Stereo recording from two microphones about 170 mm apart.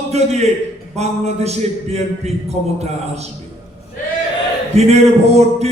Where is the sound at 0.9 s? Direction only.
40° right (ahead or behind).